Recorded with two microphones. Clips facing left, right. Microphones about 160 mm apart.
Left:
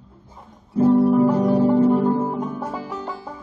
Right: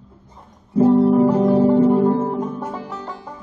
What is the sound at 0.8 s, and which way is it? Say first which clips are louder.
Music: right 2 dB; 25° right (ahead or behind).